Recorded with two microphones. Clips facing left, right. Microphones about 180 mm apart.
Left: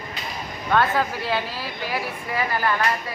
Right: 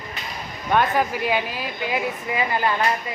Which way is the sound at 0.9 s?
15° right (ahead or behind).